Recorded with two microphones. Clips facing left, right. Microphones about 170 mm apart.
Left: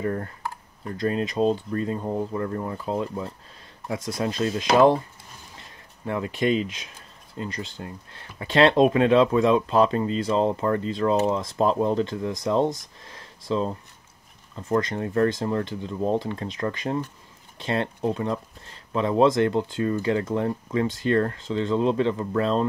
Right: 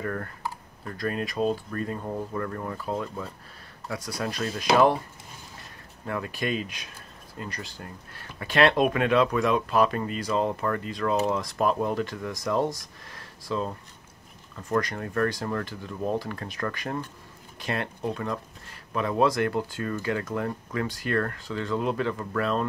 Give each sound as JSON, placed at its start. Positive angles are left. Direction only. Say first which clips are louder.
{"t": 0.0, "sound": "speech", "louder": "left 4 dB", "side_deg": 25}
{"t": 6.0, "sound": "speech", "louder": "left 6 dB", "side_deg": 25}